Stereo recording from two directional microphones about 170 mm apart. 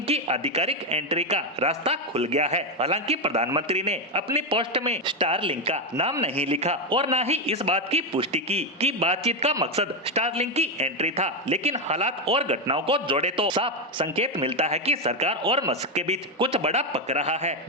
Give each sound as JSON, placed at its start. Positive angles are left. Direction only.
{"t": 0.1, "sound": "a man's voice", "side_deg": -35}